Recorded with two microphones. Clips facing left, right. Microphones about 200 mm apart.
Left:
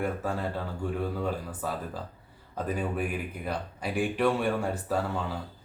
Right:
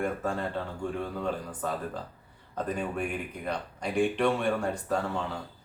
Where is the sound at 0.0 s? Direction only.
5° left (ahead or behind).